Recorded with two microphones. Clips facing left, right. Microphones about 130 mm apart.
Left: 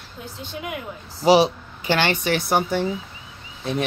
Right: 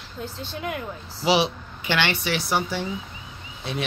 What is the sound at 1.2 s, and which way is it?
Speech, 40° left (ahead or behind).